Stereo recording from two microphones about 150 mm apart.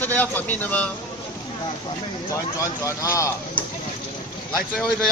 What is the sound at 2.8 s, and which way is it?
Speech, 20° left (ahead or behind).